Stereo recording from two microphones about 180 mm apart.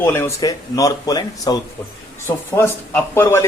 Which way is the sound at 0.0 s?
15° left (ahead or behind).